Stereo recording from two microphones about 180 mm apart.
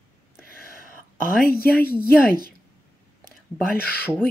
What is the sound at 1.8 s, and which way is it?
Speech, 10° left (ahead or behind).